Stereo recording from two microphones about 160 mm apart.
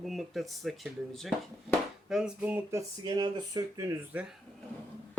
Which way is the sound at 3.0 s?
25° right (ahead or behind).